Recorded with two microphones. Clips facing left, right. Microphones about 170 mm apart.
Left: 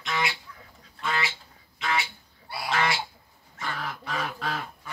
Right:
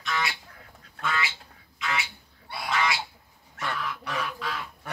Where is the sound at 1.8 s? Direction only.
35° left (ahead or behind).